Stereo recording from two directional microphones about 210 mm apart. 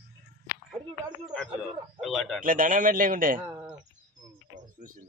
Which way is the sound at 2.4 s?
40° right (ahead or behind).